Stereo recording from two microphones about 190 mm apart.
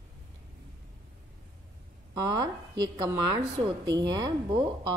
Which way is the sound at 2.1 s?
20° right (ahead or behind).